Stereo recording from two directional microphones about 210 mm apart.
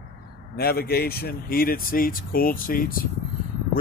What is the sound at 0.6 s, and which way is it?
Speech, 45° left (ahead or behind).